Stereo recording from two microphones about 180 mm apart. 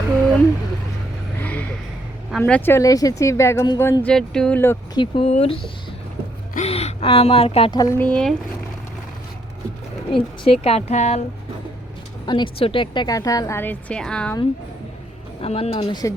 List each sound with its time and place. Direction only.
1.4 s vehicle: 10° left (ahead or behind)
2.4 s speech: 10° left (ahead or behind)
4.9 s speech: 30° left (ahead or behind)
6.5 s a sound: 35° left (ahead or behind)
7.8 s speech: 15° left (ahead or behind)
10.2 s a woman's voice: 30° left (ahead or behind)
12.2 s speech: 25° left (ahead or behind); by 14.3 s 5° left (ahead or behind)
15.4 s a woman's voice: 35° left (ahead or behind)